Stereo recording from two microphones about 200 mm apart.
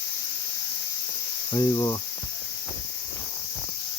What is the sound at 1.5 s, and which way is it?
Cricket, 20° left (ahead or behind).